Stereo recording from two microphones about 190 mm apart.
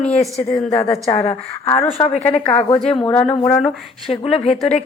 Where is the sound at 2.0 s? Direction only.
35° left (ahead or behind).